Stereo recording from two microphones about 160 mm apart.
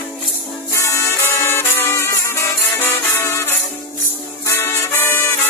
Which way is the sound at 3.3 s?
15° left (ahead or behind).